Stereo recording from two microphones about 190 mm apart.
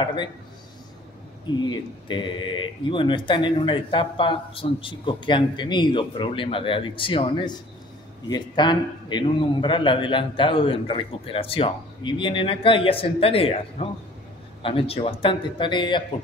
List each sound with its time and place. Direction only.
0.0 s speech: 25° left (ahead or behind)
1.7 s speech: 25° left (ahead or behind)